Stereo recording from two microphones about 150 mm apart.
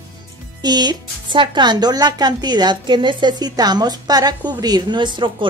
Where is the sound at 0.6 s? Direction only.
30° right (ahead or behind).